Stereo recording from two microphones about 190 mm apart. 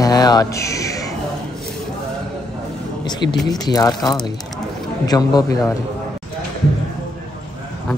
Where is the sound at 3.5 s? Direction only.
20° left (ahead or behind).